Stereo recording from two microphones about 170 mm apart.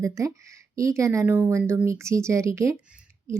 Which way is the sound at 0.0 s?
15° right (ahead or behind).